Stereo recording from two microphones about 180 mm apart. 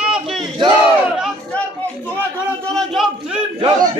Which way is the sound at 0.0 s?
5° right (ahead or behind).